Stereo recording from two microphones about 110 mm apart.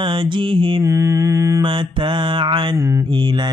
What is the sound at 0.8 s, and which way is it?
Mantra, 25° right (ahead or behind).